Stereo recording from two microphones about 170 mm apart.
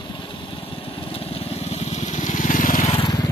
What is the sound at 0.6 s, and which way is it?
Vehicle, 35° left (ahead or behind).